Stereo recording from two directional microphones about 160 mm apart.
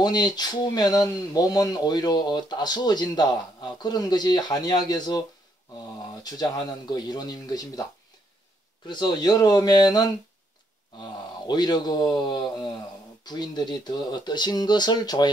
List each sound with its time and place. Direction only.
0.0 s speech: 25° left (ahead or behind)
6.2 s speech: 25° left (ahead or behind)
8.8 s speech: 25° left (ahead or behind)